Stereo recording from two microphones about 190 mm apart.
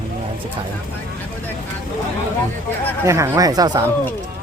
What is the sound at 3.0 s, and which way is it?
Speech, 15° right (ahead or behind).